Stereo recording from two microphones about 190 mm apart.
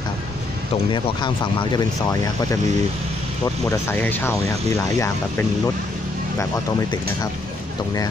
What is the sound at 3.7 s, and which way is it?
Speech, 10° left (ahead or behind).